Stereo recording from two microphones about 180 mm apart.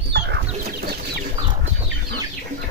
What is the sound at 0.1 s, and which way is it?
Chicken, 65° right (ahead or behind).